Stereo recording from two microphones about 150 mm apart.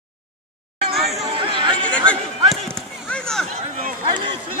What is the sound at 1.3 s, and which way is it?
Chatter, 35° right (ahead or behind).